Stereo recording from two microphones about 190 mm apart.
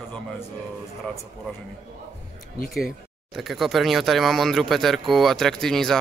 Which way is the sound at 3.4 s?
Centre (ahead or behind).